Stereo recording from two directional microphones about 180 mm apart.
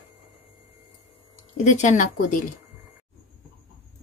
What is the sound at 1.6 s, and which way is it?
Speech, 40° left (ahead or behind).